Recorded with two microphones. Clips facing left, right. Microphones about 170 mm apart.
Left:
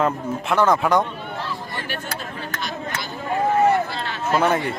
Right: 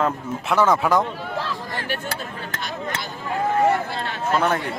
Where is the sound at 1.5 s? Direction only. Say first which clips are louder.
Right 1 dB; 90° right.